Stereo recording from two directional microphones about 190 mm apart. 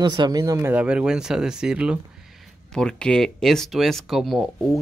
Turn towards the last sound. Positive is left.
turn(degrees=0)  # may be behind; listen again after turning